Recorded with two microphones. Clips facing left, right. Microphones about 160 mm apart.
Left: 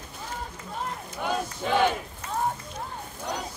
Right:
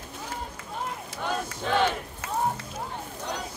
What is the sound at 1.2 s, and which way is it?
Battle cry, 10° left (ahead or behind).